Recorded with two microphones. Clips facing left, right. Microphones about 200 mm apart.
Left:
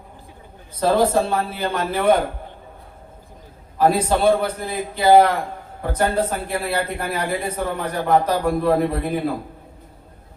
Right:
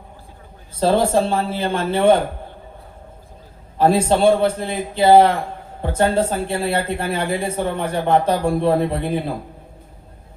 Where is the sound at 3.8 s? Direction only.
25° right (ahead or behind).